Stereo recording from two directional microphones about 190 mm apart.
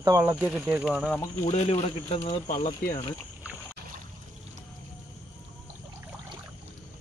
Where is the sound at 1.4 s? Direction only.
35° left (ahead or behind).